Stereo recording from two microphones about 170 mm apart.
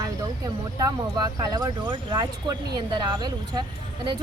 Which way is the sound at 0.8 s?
20° right (ahead or behind).